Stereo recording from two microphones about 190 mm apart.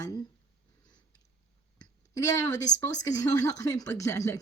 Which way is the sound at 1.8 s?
15° left (ahead or behind).